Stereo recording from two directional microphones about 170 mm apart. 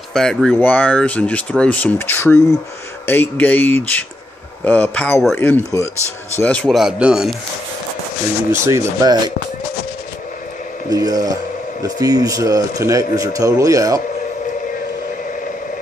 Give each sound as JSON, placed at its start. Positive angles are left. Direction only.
{"t": 0.1, "sound": "speech", "side_deg": 0}
{"t": 8.6, "sound": "speech", "side_deg": -20}
{"t": 10.9, "sound": "speech", "side_deg": -20}